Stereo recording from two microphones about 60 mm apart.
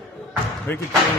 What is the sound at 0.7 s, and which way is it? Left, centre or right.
Speech, left.